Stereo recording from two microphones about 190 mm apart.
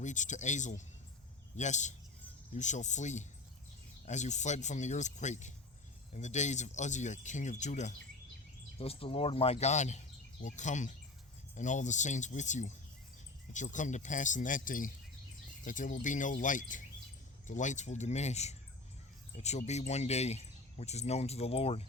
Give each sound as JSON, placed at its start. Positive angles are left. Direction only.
{"t": 0.0, "sound": "speech", "side_deg": 40}